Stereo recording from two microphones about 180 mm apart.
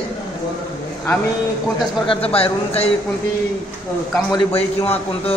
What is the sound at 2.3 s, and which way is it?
Speech, 35° left (ahead or behind).